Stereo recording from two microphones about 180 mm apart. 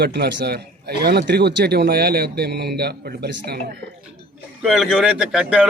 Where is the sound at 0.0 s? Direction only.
65° right (ahead or behind).